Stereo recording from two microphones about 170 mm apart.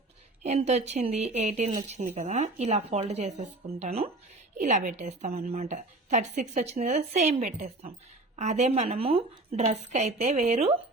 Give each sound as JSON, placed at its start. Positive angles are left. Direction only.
{"t": 0.4, "sound": "speech", "side_deg": -40}